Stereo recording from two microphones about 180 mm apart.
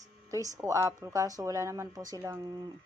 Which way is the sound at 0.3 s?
20° right (ahead or behind).